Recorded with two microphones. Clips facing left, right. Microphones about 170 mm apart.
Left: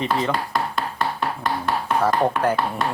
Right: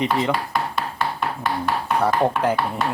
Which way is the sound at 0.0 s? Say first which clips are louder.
Right 1 dB; 15° right (ahead or behind).